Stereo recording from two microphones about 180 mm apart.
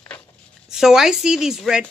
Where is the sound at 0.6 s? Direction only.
5° right (ahead or behind).